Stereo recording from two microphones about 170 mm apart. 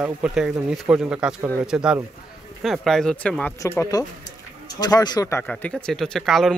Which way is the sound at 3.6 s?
15° left (ahead or behind).